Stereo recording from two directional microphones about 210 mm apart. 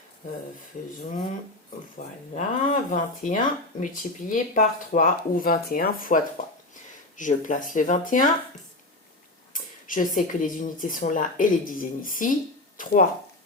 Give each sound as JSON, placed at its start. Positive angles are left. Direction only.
{"t": 2.0, "sound": "speech", "side_deg": 40}
{"t": 9.5, "sound": "speech", "side_deg": 40}